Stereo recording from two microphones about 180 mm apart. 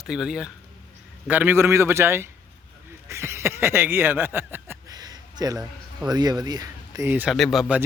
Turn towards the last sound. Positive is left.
turn(degrees=0)  # may be behind; listen again after turning